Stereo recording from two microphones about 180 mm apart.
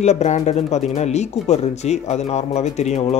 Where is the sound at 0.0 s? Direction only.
40° left (ahead or behind).